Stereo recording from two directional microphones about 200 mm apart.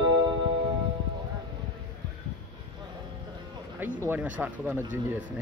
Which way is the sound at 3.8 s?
10° right (ahead or behind).